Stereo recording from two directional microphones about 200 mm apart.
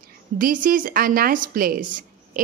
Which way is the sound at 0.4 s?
45° right (ahead or behind).